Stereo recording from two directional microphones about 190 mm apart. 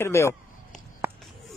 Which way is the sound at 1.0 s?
10° right (ahead or behind).